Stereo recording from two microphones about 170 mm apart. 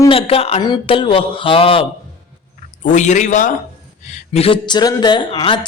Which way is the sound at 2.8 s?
45° left (ahead or behind).